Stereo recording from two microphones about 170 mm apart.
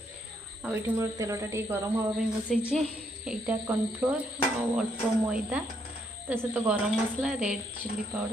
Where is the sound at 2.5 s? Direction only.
Centre (ahead or behind).